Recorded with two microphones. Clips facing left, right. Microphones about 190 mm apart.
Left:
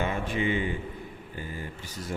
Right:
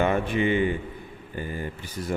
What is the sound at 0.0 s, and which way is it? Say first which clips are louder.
Speech: right 6 dB; 60° right (ahead or behind).